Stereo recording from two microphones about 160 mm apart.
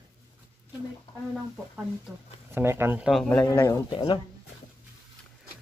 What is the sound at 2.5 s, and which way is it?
Speech, 15° right (ahead or behind).